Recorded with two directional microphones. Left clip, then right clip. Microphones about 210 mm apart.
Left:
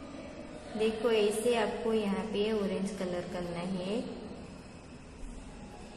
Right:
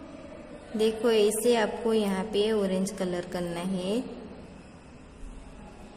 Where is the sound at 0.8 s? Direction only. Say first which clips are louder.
Right 5 dB; 50° right (ahead or behind).